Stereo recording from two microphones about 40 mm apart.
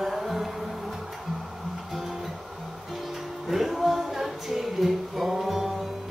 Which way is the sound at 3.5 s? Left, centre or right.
Centre.